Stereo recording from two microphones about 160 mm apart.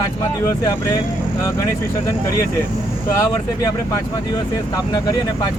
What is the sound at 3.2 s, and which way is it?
Speech, 20° left (ahead or behind).